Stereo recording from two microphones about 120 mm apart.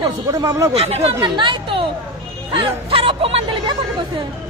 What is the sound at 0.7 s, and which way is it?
Speech, 60° right (ahead or behind).